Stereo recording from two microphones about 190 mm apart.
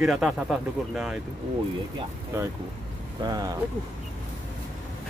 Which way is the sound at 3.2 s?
20° right (ahead or behind).